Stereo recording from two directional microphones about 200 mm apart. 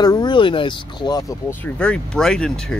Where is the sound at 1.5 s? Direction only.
5° left (ahead or behind).